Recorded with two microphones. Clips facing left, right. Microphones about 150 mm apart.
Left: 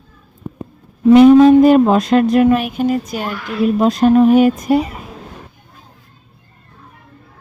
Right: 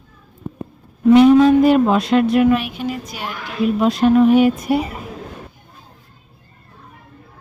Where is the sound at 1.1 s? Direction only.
45° left (ahead or behind).